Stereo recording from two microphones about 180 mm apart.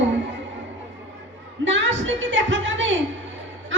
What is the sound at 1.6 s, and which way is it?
A woman's voice, 90° right.